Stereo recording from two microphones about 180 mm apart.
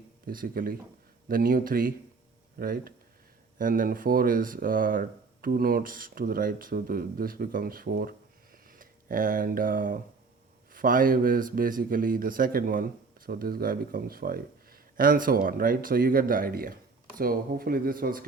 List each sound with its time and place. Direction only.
0.3 s a man's voice: 55° right (ahead or behind)
8.5 s a sound: 50° right (ahead or behind)
10.7 s a man's voice: 50° right (ahead or behind)